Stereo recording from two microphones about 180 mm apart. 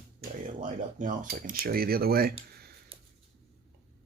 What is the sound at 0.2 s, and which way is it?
Speech, 45° right (ahead or behind).